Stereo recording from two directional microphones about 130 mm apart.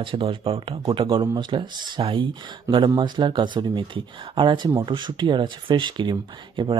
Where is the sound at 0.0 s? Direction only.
40° right (ahead or behind).